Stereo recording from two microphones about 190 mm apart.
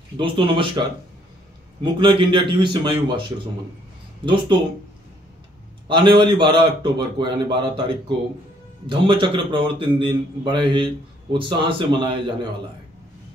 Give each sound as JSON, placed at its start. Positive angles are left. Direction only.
{"t": 0.2, "sound": "a man's voice", "side_deg": -25}
{"t": 5.9, "sound": "a man's voice", "side_deg": -25}
{"t": 8.8, "sound": "a man's voice", "side_deg": -25}